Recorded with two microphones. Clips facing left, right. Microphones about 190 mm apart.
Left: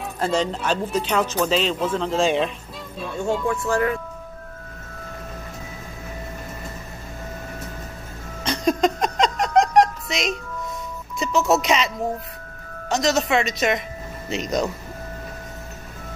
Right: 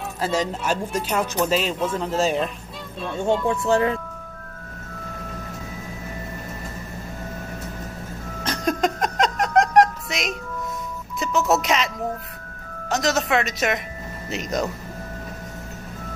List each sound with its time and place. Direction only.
0.2 s a woman's voice: 5° right (ahead or behind)
3.4 s speech: 25° right (ahead or behind)
8.5 s a sound: 5° right (ahead or behind)
11.1 s speech: centre (ahead or behind)
12.9 s a woman's voice: 5° right (ahead or behind)